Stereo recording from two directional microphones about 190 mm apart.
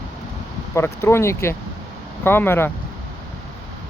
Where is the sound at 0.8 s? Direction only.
15° left (ahead or behind).